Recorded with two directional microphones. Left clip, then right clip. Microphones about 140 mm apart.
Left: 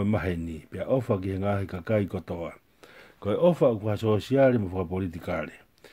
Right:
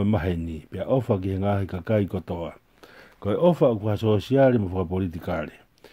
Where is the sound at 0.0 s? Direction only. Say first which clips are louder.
Right 3 dB; 35° right (ahead or behind).